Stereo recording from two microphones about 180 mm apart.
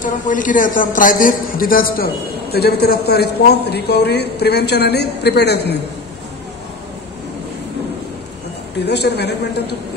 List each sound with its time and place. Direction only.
0.0 s a man's voice: 45° left (ahead or behind); by 5.8 s 65° left (ahead or behind)
8.8 s a man's voice: 65° left (ahead or behind)